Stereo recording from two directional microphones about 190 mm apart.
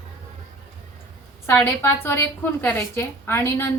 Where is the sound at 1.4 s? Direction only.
10° left (ahead or behind).